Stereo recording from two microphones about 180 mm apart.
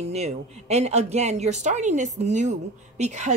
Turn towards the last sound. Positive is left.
turn(degrees=-40)  # may be behind; listen again after turning